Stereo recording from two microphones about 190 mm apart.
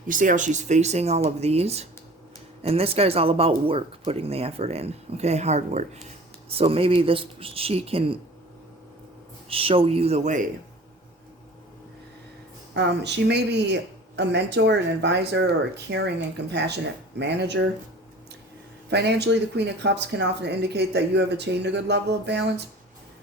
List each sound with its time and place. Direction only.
0.1 s speech: 45° right (ahead or behind)
9.5 s speech: 30° right (ahead or behind)
12.7 s speech: 65° right (ahead or behind)
18.9 s speech: 60° right (ahead or behind)